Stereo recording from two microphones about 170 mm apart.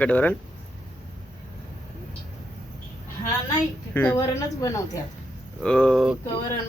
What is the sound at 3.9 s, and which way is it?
Speech, 10° left (ahead or behind).